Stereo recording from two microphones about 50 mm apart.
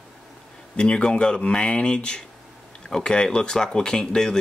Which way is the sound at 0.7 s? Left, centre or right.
Left.